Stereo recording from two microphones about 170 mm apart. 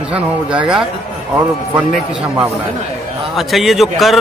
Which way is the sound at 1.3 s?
10° right (ahead or behind).